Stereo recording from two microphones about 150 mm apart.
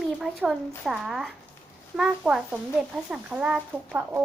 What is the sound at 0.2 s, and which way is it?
A woman's voice, 5° right (ahead or behind).